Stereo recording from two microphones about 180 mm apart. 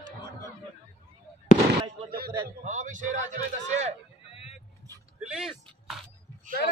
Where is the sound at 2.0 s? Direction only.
55° right (ahead or behind).